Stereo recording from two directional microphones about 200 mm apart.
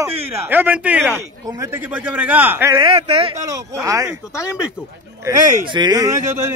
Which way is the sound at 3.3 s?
15° right (ahead or behind).